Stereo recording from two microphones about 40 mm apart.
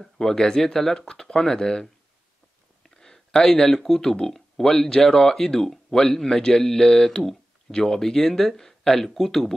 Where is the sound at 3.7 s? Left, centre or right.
Centre.